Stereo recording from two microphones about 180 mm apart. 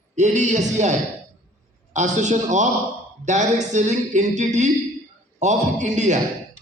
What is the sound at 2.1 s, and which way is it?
A man's voice, 40° right (ahead or behind).